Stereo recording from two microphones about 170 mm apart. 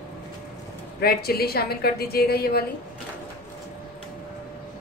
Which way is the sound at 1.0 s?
65° left (ahead or behind).